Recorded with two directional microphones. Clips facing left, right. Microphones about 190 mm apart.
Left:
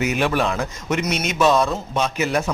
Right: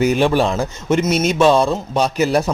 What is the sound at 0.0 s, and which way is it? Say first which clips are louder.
Speech: right 5 dB; 30° right (ahead or behind).